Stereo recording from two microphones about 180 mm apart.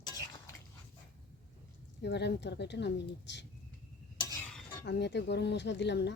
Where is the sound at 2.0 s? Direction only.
70° left (ahead or behind).